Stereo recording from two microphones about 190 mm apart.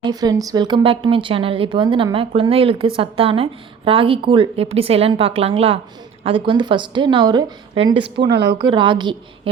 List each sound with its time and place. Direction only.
0.0 s speech: 20° right (ahead or behind)
8.3 s speech: 65° right (ahead or behind)
8.5 s speech: 25° right (ahead or behind)